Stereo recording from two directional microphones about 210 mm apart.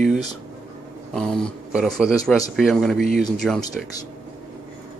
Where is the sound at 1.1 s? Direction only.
5° left (ahead or behind).